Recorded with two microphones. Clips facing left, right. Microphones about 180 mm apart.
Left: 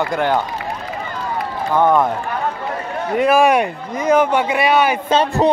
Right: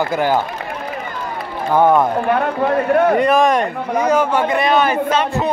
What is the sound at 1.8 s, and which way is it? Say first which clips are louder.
Speech: right 1 dB; 10° right (ahead or behind).